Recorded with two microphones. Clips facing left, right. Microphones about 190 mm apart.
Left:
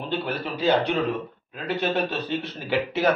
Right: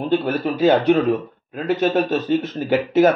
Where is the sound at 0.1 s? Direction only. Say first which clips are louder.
Right 8 dB; 45° right (ahead or behind).